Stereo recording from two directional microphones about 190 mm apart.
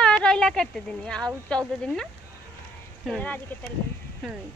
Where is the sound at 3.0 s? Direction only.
5° left (ahead or behind).